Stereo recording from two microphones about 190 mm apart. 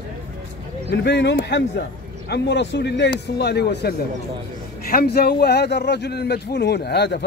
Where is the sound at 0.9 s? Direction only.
65° left (ahead or behind).